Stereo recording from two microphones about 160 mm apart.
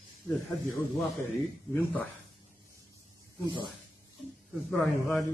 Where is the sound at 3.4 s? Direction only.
30° right (ahead or behind).